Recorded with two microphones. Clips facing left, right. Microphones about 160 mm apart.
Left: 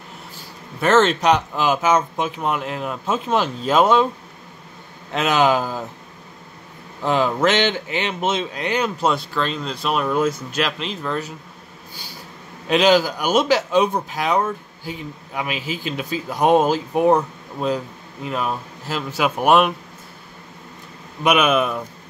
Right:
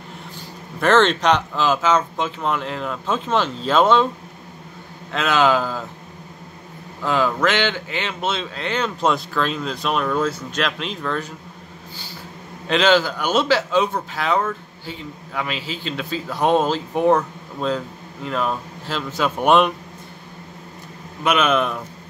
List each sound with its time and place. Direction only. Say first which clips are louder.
0.7 s a man's voice: even; 5° left (ahead or behind)
5.1 s a man's voice: even; 15° left (ahead or behind)
7.0 s a man's voice: left 1 dB; 20° left (ahead or behind); by 10.0 s centre (ahead or behind)
10.0 s a man's voice: left 2 dB; 15° left (ahead or behind)
12.6 s a man's voice: left 1 dB; 10° left (ahead or behind)
21.2 s a man's voice: left 1 dB; 15° left (ahead or behind)